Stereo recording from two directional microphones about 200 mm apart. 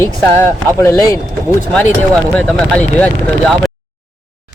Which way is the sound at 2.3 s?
5° left (ahead or behind).